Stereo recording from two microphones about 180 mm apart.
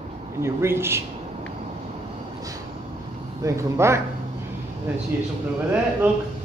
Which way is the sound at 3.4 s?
15° right (ahead or behind).